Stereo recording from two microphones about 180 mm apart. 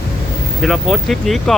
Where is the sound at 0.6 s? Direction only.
Centre (ahead or behind).